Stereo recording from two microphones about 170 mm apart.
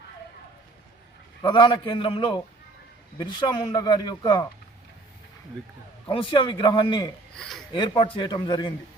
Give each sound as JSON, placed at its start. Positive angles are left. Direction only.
{"t": 1.4, "sound": "speech", "side_deg": 30}
{"t": 6.1, "sound": "speech", "side_deg": 30}
{"t": 7.3, "sound": "speech", "side_deg": 0}
{"t": 7.7, "sound": "speech", "side_deg": 25}